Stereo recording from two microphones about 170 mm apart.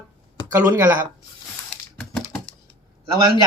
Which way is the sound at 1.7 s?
5° left (ahead or behind).